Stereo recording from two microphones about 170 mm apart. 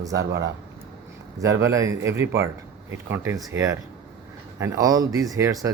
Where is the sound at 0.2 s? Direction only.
85° right.